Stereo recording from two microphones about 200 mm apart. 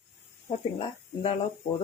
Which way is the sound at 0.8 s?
30° left (ahead or behind).